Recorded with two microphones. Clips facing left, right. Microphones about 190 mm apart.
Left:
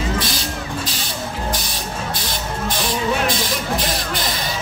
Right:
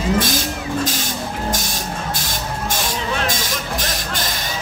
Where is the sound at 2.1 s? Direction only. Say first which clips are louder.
Even; 45° right (ahead or behind).